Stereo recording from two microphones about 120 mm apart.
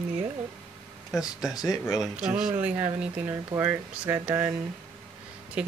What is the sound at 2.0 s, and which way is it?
Speech, 10° right (ahead or behind).